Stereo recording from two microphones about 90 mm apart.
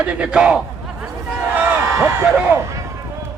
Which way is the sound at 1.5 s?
20° right (ahead or behind).